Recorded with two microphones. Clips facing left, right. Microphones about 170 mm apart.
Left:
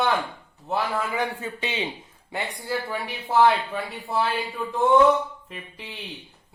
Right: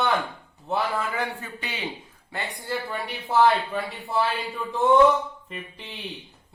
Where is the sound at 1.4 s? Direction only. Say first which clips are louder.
Left 6 dB; 20° left (ahead or behind).